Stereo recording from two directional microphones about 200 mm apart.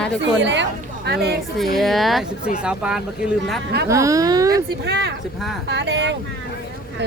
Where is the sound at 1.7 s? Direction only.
Centre (ahead or behind).